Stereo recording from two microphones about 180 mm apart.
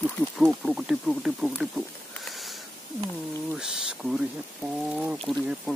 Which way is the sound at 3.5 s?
5° right (ahead or behind).